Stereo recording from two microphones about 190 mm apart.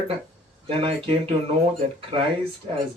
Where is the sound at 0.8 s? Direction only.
30° right (ahead or behind).